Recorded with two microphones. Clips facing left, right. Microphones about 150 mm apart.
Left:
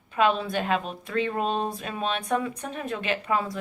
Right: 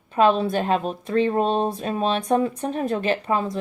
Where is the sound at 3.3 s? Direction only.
20° right (ahead or behind).